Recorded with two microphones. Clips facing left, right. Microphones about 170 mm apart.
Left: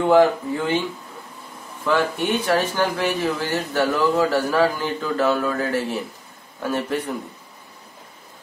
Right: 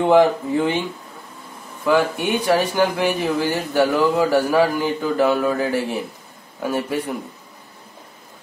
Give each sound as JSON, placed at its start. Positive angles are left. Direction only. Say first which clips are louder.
{"t": 0.0, "sound": "speech", "louder": "right 1 dB", "side_deg": -20}
{"t": 1.9, "sound": "speech", "louder": "right 2 dB", "side_deg": -10}